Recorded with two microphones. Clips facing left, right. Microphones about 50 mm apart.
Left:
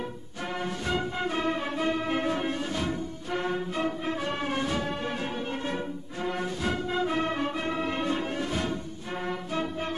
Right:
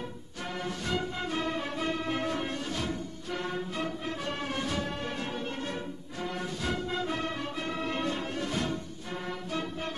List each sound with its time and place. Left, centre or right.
0.8 s music: left
6.2 s music: left